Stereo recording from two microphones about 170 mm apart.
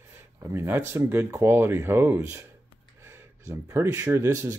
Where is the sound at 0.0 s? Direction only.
10° right (ahead or behind).